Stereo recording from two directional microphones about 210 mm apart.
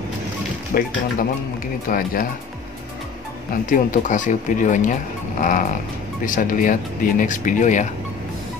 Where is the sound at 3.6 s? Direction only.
40° left (ahead or behind).